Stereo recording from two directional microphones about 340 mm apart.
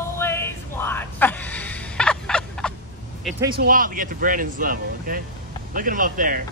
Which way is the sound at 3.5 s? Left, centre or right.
Right.